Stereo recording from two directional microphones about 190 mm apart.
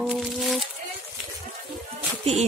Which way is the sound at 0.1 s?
Centre (ahead or behind).